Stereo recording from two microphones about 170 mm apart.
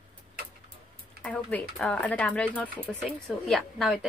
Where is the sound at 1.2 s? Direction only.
5° left (ahead or behind).